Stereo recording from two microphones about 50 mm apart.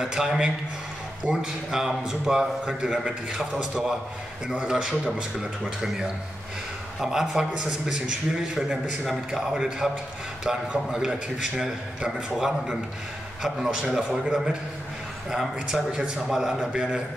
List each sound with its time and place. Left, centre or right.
0.0 s a man's voice: centre
7.0 s a man's voice: centre
16.5 s a man's voice: centre